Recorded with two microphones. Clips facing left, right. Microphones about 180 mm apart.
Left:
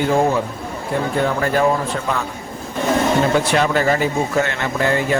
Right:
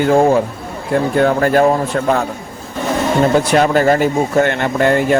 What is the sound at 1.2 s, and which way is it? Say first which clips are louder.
Speech: right 6 dB; 45° right (ahead or behind).